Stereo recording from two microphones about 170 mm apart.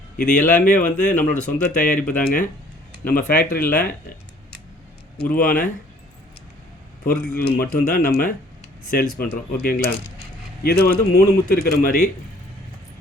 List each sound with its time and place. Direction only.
0.3 s speech: 50° left (ahead or behind)
5.3 s speech: 55° left (ahead or behind)
7.0 s speech: 60° left (ahead or behind)